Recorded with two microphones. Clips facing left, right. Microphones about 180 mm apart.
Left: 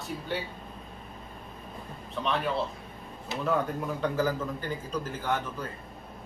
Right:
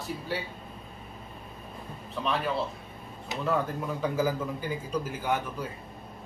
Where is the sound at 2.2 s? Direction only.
Centre (ahead or behind).